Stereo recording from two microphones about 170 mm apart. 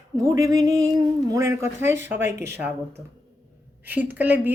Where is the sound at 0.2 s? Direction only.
20° right (ahead or behind).